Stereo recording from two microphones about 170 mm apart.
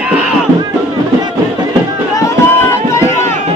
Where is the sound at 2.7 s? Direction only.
15° left (ahead or behind).